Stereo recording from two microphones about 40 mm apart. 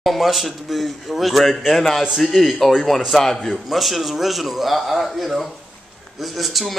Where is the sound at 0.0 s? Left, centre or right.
Centre.